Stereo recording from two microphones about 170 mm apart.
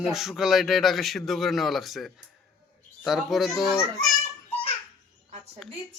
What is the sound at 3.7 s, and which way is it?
Speech, 20° left (ahead or behind).